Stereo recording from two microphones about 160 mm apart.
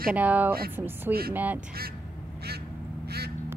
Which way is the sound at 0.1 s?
10° right (ahead or behind).